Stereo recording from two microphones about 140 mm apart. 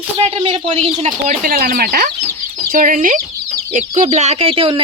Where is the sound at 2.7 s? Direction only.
75° right (ahead or behind).